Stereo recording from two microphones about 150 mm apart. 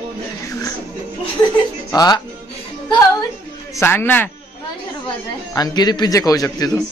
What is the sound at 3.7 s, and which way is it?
Speech, 15° left (ahead or behind).